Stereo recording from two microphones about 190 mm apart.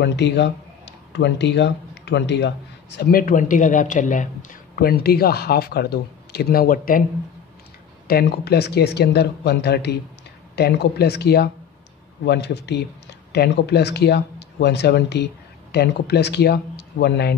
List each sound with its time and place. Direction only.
0.0 s speech: 65° left (ahead or behind); by 7.1 s 50° left (ahead or behind)
8.1 s speech: 55° left (ahead or behind)